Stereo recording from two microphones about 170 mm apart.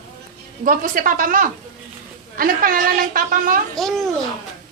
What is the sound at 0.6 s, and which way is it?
A woman's voice, 55° right (ahead or behind).